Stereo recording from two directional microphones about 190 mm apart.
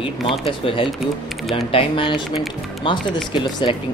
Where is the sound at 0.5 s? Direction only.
30° left (ahead or behind).